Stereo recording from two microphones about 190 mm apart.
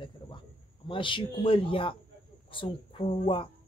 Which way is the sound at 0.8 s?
25° left (ahead or behind).